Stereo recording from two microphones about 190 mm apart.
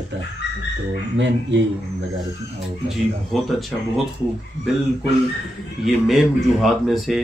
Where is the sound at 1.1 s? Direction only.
70° right (ahead or behind).